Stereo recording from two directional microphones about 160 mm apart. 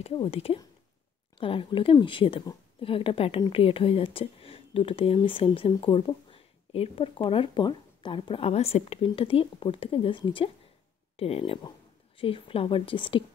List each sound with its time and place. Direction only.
0.0 s speech: 40° left (ahead or behind)